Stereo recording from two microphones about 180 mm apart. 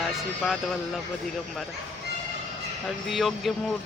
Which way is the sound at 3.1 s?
Centre (ahead or behind).